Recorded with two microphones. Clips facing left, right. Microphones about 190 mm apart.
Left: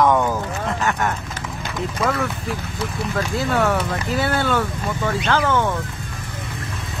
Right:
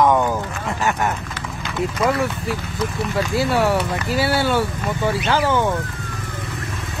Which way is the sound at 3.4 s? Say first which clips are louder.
Right 2 dB; 10° right (ahead or behind).